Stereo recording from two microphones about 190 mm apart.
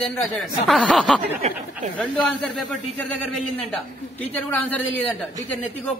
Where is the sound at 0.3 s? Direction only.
Centre (ahead or behind).